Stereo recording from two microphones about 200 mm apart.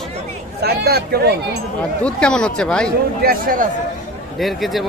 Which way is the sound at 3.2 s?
45° right (ahead or behind).